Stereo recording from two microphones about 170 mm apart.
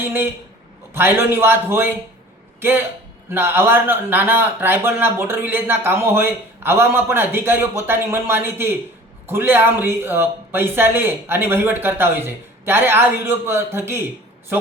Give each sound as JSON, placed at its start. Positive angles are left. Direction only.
{"t": 0.0, "sound": "a man's voice", "side_deg": -10}